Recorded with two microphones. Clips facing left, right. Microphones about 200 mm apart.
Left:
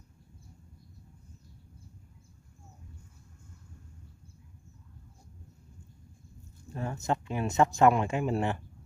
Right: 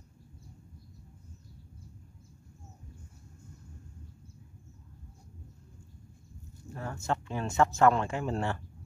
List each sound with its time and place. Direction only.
6.7 s speech: 20° left (ahead or behind)